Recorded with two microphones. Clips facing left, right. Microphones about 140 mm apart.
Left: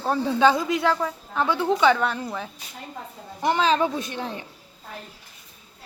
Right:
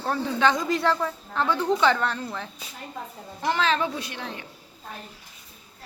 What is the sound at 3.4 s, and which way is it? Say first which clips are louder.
Speech: left 3 dB; 20° left (ahead or behind).